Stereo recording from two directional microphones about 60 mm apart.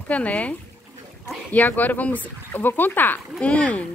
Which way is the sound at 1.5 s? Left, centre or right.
Left.